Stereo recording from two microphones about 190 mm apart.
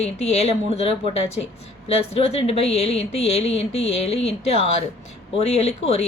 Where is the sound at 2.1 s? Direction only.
30° left (ahead or behind).